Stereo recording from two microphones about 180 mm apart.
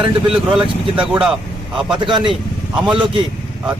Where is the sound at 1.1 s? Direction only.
5° right (ahead or behind).